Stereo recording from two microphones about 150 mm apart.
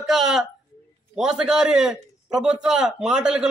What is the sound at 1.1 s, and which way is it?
A man's voice, 5° right (ahead or behind).